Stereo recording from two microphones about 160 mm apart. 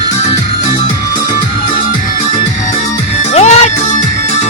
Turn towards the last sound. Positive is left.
turn(degrees=45)  # may be behind; listen again after turning